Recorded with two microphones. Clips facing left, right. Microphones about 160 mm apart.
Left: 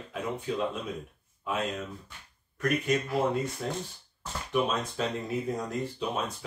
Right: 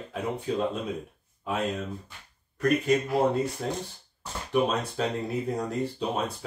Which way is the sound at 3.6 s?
40° right (ahead or behind).